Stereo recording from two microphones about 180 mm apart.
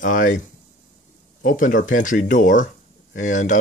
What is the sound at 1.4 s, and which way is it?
Speech, 45° left (ahead or behind).